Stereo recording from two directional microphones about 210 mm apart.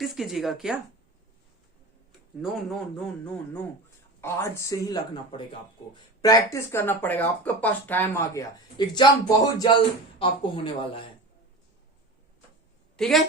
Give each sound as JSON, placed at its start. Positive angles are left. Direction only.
{"t": 0.0, "sound": "speech", "side_deg": 0}
{"t": 2.4, "sound": "speech", "side_deg": 0}
{"t": 13.0, "sound": "speech", "side_deg": 0}